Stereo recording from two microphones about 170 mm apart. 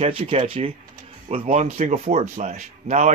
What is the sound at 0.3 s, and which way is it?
Speech, 35° right (ahead or behind).